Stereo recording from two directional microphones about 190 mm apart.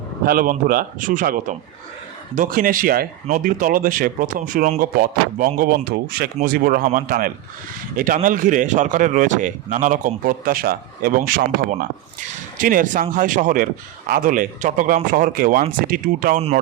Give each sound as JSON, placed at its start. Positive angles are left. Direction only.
{"t": 0.3, "sound": "speech", "side_deg": -50}